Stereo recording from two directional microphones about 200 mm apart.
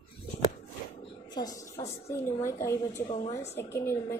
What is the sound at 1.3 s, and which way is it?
A woman's voice, 20° left (ahead or behind).